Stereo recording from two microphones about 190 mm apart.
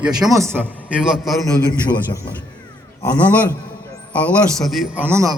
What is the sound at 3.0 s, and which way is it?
A man's voice, 10° left (ahead or behind).